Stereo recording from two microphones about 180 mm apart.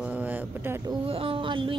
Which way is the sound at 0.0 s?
10° right (ahead or behind).